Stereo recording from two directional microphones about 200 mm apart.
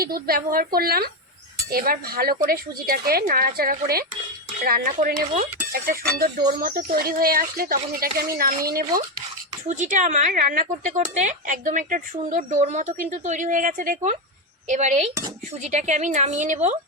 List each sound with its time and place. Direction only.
0.0 s speech: 50° right (ahead or behind)